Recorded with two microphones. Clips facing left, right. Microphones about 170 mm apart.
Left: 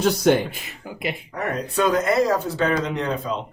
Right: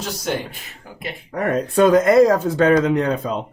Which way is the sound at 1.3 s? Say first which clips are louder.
Right 6 dB; 50° right (ahead or behind).